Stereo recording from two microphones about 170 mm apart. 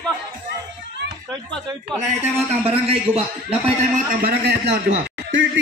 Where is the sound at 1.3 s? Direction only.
5° left (ahead or behind).